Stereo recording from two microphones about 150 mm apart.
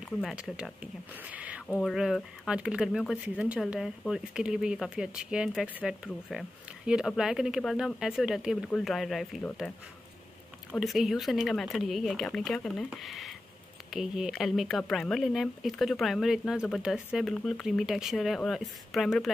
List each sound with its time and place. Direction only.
0.2 s speech: 5° right (ahead or behind)
10.8 s speech: centre (ahead or behind)